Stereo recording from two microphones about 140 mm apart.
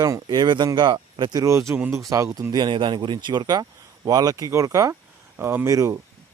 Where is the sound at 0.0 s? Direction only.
30° right (ahead or behind).